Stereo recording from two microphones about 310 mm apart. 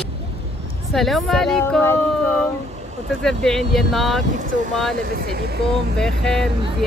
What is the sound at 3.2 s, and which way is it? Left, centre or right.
Speech, centre.